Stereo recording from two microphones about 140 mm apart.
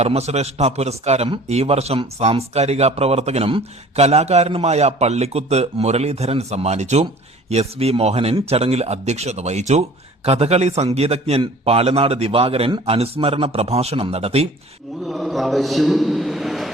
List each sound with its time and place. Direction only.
0.0 s speech: 50° right (ahead or behind)
15.0 s a man's voice: centre (ahead or behind)